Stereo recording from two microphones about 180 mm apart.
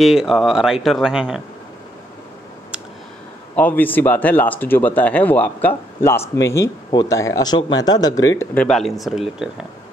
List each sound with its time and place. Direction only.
0.0 s speech: centre (ahead or behind)
3.5 s speech: 10° left (ahead or behind)
8.5 s speech: 5° left (ahead or behind)